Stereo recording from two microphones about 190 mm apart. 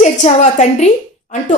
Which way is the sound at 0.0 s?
40° left (ahead or behind).